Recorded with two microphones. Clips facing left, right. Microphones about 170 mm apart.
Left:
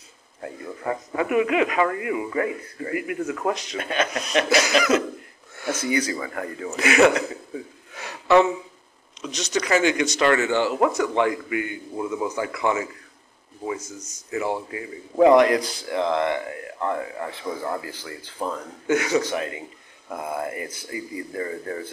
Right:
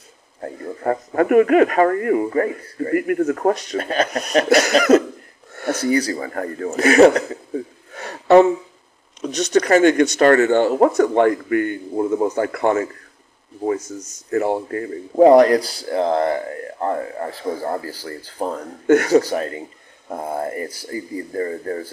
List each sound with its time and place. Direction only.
0.4 s a man's voice: 45° right (ahead or behind)
9.3 s speech: 55° right (ahead or behind)
14.3 s speech: 50° right (ahead or behind)
15.1 s speech: 35° right (ahead or behind)